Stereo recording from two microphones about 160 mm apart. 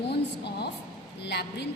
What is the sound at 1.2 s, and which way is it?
Speech, 90° left.